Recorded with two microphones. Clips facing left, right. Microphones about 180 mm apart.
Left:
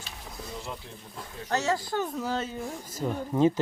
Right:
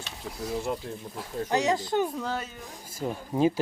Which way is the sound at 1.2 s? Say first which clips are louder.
Right 3 dB; 15° right (ahead or behind).